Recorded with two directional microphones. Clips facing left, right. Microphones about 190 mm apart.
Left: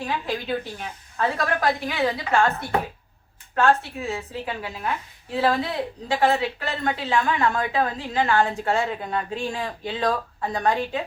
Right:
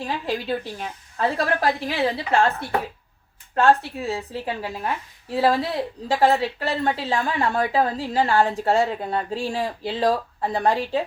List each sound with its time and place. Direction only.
0.0 s a woman's voice: 35° right (ahead or behind)
3.5 s a woman's voice: 35° right (ahead or behind)